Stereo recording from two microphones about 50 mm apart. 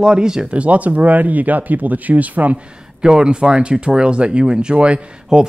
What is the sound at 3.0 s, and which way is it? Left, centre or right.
Speech, centre.